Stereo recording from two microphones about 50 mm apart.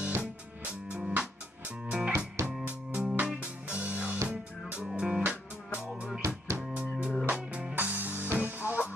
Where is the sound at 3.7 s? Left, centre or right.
Right.